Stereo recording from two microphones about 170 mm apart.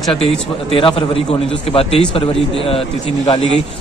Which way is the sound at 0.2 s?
30° left (ahead or behind).